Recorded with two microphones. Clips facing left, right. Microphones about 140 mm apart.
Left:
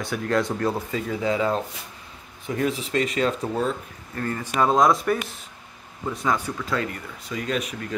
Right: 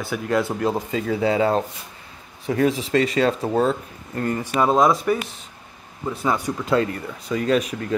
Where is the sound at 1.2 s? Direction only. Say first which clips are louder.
Right 4 dB; 35° right (ahead or behind).